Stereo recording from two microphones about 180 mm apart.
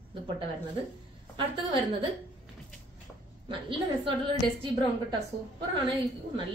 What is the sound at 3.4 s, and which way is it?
Speech, 30° right (ahead or behind).